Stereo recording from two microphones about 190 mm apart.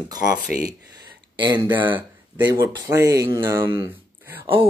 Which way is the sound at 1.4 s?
25° right (ahead or behind).